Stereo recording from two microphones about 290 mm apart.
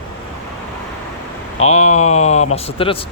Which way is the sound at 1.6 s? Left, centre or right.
Left.